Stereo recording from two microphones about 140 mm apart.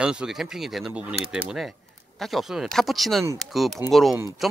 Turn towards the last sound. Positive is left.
turn(degrees=0)  # may be behind; listen again after turning